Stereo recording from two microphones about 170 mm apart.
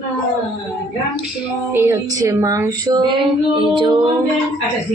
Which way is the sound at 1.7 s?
15° right (ahead or behind).